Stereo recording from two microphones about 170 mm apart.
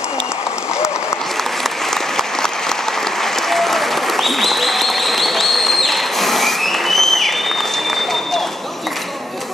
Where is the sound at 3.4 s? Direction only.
Centre (ahead or behind).